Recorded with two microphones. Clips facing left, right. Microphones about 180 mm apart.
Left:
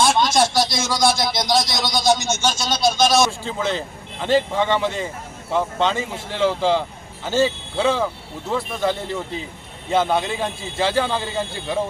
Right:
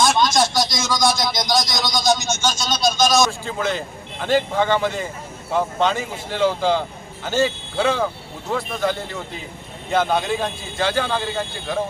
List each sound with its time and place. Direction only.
0.0 s speech: 30° left (ahead or behind)
4.4 s speech: centre (ahead or behind)
9.9 s speech: centre (ahead or behind)
10.8 s speech: 30° left (ahead or behind)
11.1 s speech: centre (ahead or behind)